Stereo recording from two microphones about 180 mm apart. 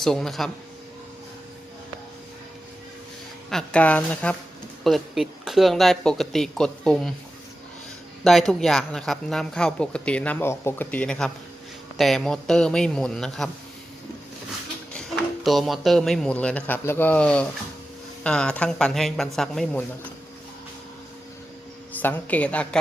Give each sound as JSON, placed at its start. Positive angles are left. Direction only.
{"t": 0.0, "sound": "speech", "side_deg": 5}
{"t": 3.5, "sound": "a woman's voice", "side_deg": 5}
{"t": 8.2, "sound": "speech", "side_deg": 0}
{"t": 14.9, "sound": "speech", "side_deg": 0}
{"t": 22.0, "sound": "a woman's voice", "side_deg": 10}